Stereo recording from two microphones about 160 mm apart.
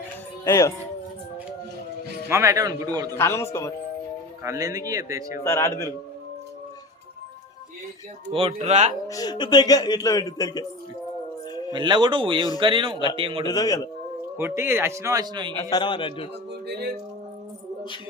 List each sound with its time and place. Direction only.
0.4 s speech: 20° left (ahead or behind)
2.3 s speech: 20° right (ahead or behind)
3.2 s a man's voice: 15° left (ahead or behind)
4.4 s speech: 20° right (ahead or behind)
5.4 s a man's voice: 15° left (ahead or behind)
8.3 s speech: 35° right (ahead or behind)
9.0 s speech: 25° left (ahead or behind)
11.7 s speech: 30° right (ahead or behind)
13.4 s speech: 25° left (ahead or behind)
14.3 s a man's voice: 15° right (ahead or behind)
15.7 s speech: 30° left (ahead or behind)